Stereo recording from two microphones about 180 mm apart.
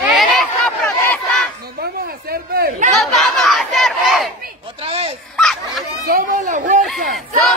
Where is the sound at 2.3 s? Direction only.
55° right (ahead or behind).